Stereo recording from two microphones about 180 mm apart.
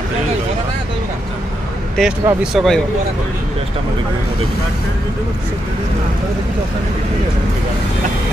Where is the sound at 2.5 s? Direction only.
Centre (ahead or behind).